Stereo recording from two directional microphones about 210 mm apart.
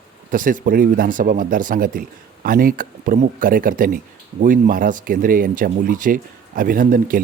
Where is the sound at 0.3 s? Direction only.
40° right (ahead or behind).